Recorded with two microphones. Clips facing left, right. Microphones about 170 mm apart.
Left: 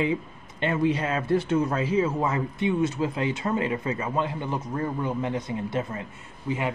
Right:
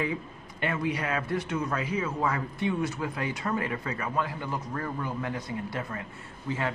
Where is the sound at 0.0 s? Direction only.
25° left (ahead or behind).